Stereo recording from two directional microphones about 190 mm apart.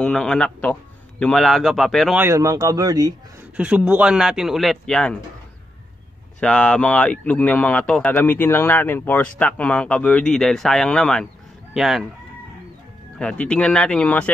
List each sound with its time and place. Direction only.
0.0 s speech: 5° left (ahead or behind)
2.2 s speech: 20° right (ahead or behind)
3.5 s speech: 5° right (ahead or behind)
6.4 s a man's voice: 5° left (ahead or behind)
13.2 s speech: 5° left (ahead or behind)